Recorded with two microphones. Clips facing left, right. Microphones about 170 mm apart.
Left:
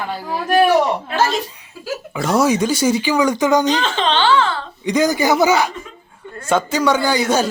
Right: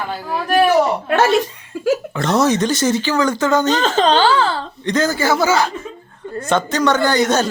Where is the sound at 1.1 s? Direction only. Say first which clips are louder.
Right 6 dB; 65° right (ahead or behind).